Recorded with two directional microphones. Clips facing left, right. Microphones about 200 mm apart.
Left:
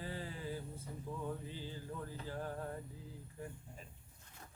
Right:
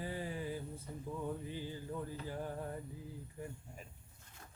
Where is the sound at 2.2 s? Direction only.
15° right (ahead or behind).